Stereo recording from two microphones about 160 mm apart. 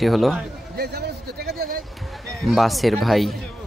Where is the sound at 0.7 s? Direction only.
90° right; by 1.8 s 70° right (ahead or behind).